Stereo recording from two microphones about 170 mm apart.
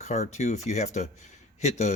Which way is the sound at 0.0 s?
45° left (ahead or behind).